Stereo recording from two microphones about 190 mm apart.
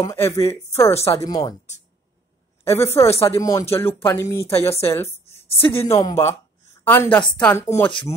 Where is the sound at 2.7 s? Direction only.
15° left (ahead or behind).